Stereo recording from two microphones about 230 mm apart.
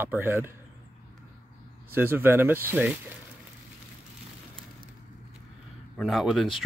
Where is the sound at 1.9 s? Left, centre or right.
Centre.